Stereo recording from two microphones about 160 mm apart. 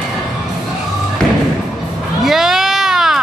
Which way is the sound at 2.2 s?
Centre (ahead or behind).